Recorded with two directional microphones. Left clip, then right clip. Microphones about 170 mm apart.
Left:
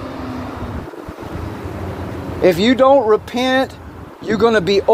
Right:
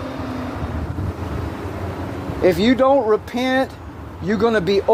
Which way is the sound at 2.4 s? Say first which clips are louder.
Left 3 dB; 5° right (ahead or behind).